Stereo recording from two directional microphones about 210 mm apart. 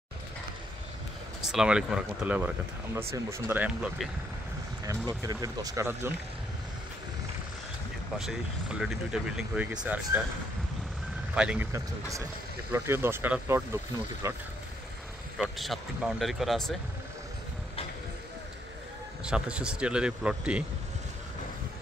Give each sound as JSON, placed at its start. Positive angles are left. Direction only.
{"t": 1.5, "sound": "speech", "side_deg": -5}
{"t": 5.2, "sound": "speech", "side_deg": -15}
{"t": 8.2, "sound": "speech", "side_deg": 0}
{"t": 11.3, "sound": "speech", "side_deg": -5}
{"t": 15.3, "sound": "speech", "side_deg": 0}
{"t": 19.2, "sound": "speech", "side_deg": -5}